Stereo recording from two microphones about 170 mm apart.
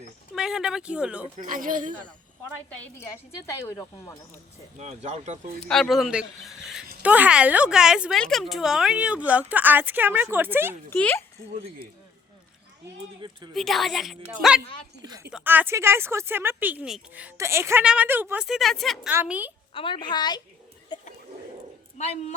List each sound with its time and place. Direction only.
0.3 s speech: 5° right (ahead or behind)
1.4 s speech: 55° right (ahead or behind)
3.7 s speech: 20° left (ahead or behind)
4.8 s speech: 40° right (ahead or behind)
5.5 s a woman's voice: 5° left (ahead or behind); by 10.8 s 10° right (ahead or behind)
10.8 s speech: 10° left (ahead or behind)
13.5 s a woman's voice: centre (ahead or behind)
19.1 s a woman's voice: 10° right (ahead or behind)
19.7 s a woman's voice: 30° left (ahead or behind)
20.9 s a sound: 25° left (ahead or behind)
21.9 s speech: 40° left (ahead or behind)